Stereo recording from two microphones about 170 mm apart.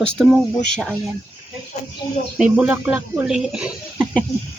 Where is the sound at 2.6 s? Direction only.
10° right (ahead or behind).